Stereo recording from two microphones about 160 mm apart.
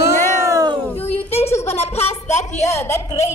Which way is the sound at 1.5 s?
15° left (ahead or behind).